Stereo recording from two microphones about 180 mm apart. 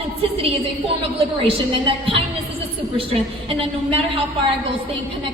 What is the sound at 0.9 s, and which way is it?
Speech, 30° right (ahead or behind).